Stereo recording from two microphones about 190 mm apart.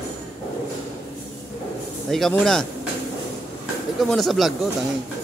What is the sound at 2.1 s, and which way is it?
Speech, centre (ahead or behind).